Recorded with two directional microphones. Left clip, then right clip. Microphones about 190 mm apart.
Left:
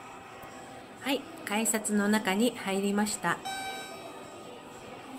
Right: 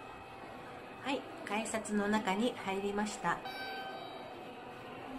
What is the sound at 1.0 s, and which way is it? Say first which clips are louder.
A woman's voice: left 6 dB; 25° left (ahead or behind).